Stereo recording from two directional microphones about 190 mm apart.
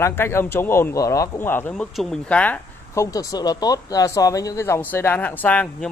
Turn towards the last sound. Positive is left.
turn(degrees=10)  # may be behind; listen again after turning